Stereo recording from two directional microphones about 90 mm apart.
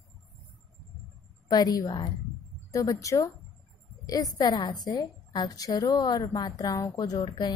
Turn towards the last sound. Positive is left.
turn(degrees=50)  # may be behind; listen again after turning